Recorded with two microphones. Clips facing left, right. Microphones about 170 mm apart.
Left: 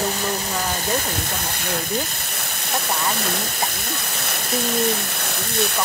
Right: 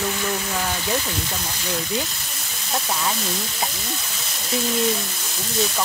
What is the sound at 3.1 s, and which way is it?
Speech, 60° left (ahead or behind).